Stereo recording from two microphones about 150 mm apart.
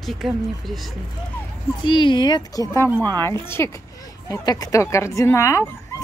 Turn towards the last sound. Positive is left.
turn(degrees=20)  # may be behind; listen again after turning